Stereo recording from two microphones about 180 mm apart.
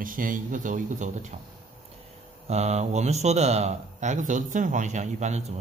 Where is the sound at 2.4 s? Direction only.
35° right (ahead or behind).